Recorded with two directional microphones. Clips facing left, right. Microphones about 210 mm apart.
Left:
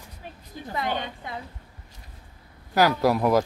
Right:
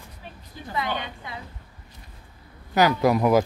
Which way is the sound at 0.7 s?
45° left (ahead or behind).